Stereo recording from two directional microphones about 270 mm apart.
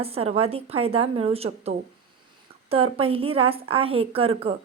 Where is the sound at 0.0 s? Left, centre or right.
Right.